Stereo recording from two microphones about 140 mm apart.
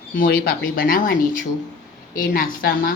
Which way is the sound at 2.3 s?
90° left.